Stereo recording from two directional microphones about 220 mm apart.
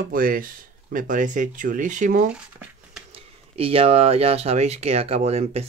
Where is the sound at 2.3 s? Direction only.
5° right (ahead or behind).